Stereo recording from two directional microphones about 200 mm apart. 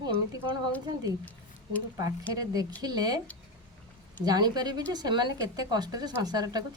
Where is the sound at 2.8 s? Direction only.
20° right (ahead or behind).